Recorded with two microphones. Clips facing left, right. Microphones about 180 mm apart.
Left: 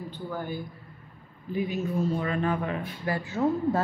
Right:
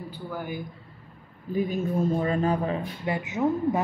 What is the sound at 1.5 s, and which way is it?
Speech, 50° right (ahead or behind).